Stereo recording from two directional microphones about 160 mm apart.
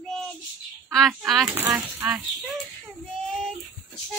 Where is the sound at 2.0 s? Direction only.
5° right (ahead or behind).